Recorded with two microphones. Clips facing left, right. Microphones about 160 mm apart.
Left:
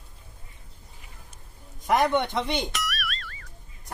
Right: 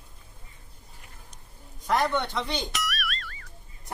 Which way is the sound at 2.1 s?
20° left (ahead or behind).